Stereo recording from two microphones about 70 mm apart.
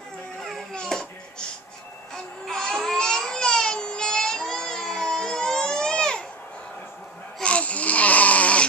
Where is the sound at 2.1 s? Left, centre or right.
Centre.